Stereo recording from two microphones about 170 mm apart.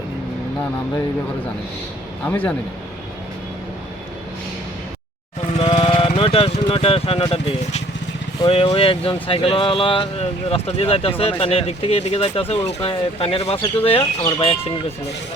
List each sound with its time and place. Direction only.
2.2 s speech: 10° left (ahead or behind)
5.5 s a sound: 30° left (ahead or behind)
8.4 s speech: 35° left (ahead or behind)